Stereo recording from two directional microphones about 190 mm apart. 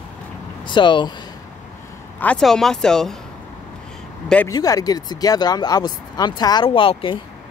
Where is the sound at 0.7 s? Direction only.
25° left (ahead or behind).